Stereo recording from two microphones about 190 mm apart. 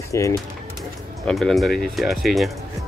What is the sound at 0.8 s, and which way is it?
Speech, centre (ahead or behind).